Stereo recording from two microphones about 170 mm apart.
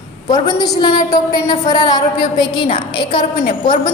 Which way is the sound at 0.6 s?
25° left (ahead or behind).